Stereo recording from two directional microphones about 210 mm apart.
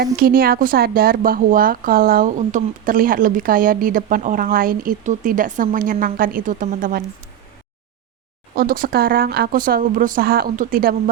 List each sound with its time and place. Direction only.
0.0 s speech: 45° right (ahead or behind)
8.5 s a woman's voice: 45° right (ahead or behind)